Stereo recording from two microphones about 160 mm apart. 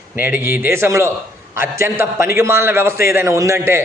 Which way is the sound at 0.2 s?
15° right (ahead or behind).